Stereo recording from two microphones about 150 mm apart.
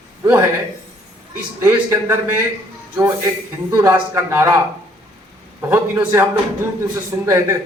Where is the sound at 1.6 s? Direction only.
15° right (ahead or behind).